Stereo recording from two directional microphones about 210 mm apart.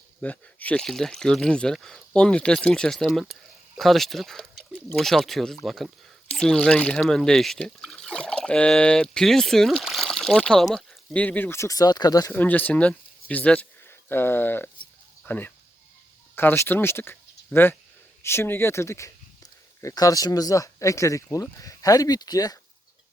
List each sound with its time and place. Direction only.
0.2 s speech: 5° left (ahead or behind)